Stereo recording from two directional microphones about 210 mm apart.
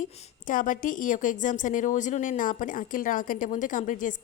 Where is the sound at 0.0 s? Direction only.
40° left (ahead or behind).